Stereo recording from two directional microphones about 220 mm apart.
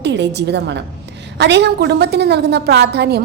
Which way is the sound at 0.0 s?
50° right (ahead or behind).